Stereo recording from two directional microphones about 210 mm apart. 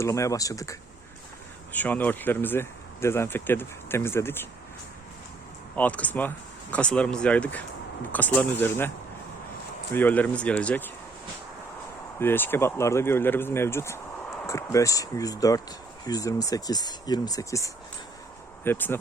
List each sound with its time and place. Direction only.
0.0 s speech: 15° left (ahead or behind)
5.7 s speech: 5° left (ahead or behind)
9.9 s speech: 10° left (ahead or behind)
12.2 s speech: 10° left (ahead or behind)